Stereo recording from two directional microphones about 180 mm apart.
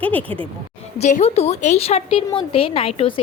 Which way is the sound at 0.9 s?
40° left (ahead or behind).